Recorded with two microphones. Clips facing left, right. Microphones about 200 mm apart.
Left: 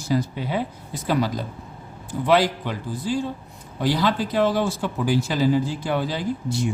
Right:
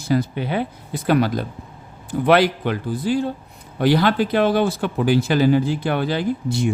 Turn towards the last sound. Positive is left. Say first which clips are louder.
# right 4 dB
turn(degrees=-60)  # may be behind; listen again after turning